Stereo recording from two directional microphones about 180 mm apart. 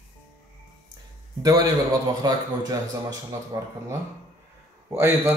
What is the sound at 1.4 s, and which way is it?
Speech, 20° right (ahead or behind).